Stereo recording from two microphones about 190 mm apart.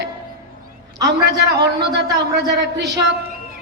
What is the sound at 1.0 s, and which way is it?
A man's voice, 65° right (ahead or behind).